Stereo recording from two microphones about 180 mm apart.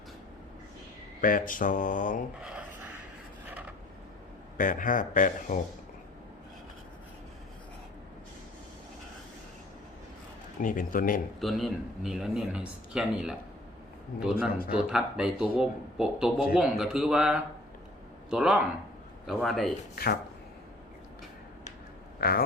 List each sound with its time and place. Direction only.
1.2 s speech: 50° left (ahead or behind)
2.4 s a sound: 5° right (ahead or behind)
3.5 s filing: 10° right (ahead or behind)
4.5 s speech: 50° left (ahead or behind)
10.6 s speech: 45° left (ahead or behind)
11.3 s speech: centre (ahead or behind)
22.2 s speech: 55° left (ahead or behind)